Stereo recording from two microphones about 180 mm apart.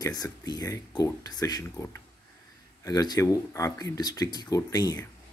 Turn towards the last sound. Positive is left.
turn(degrees=20)  # may be behind; listen again after turning